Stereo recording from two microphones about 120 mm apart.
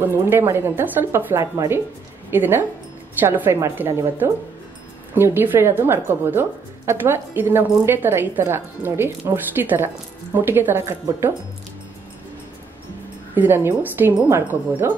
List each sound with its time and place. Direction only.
0.0 s a woman's voice: 20° right (ahead or behind)
13.3 s a woman's voice: 15° right (ahead or behind)